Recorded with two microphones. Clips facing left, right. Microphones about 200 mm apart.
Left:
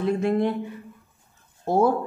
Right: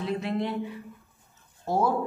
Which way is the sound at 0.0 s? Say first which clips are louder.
Left 7 dB; 50° left (ahead or behind).